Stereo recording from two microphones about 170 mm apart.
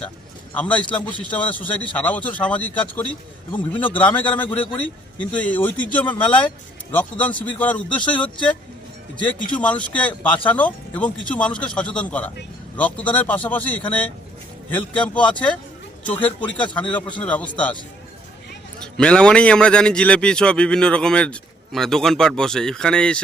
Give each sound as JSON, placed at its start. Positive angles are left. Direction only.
{"t": 0.5, "sound": "speech", "side_deg": 5}
{"t": 18.8, "sound": "a man's voice", "side_deg": 5}